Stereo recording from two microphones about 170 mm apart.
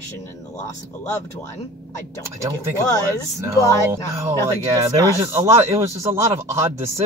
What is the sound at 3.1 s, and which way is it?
Speech, 15° right (ahead or behind).